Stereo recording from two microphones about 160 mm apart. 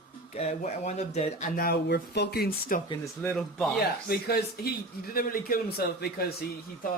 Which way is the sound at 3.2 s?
10° left (ahead or behind).